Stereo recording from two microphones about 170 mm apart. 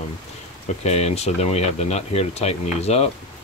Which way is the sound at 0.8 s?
40° left (ahead or behind).